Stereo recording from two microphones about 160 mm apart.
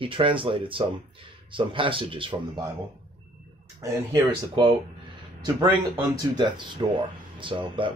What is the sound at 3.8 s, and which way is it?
Speech, 20° right (ahead or behind).